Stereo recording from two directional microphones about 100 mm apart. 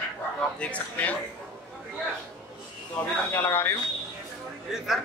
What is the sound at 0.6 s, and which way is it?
Speech, 15° left (ahead or behind).